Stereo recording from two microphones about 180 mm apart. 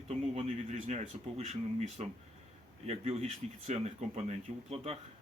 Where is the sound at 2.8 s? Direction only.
35° right (ahead or behind).